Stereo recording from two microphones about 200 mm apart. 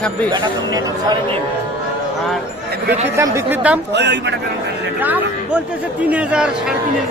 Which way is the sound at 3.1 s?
15° right (ahead or behind).